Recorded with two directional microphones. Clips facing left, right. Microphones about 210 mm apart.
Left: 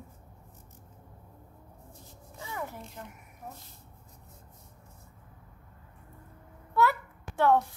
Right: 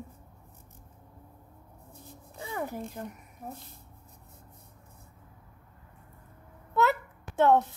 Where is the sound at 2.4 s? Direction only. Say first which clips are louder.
Right 4 dB; 35° right (ahead or behind).